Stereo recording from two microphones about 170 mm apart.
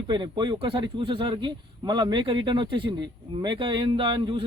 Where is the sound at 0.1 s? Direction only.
25° right (ahead or behind).